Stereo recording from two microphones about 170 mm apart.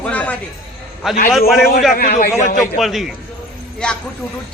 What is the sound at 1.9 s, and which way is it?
Speech, 60° left (ahead or behind).